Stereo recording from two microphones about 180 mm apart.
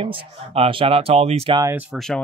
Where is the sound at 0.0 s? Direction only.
30° right (ahead or behind).